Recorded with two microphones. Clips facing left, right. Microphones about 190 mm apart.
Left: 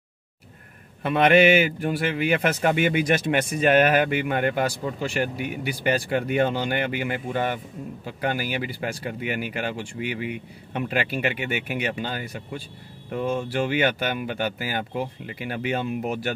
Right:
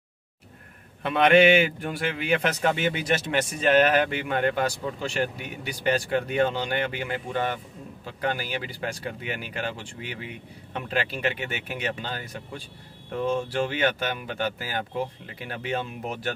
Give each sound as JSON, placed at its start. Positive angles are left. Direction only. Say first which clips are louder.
{"t": 1.0, "sound": "a man's voice", "louder": "left 1 dB", "side_deg": 5}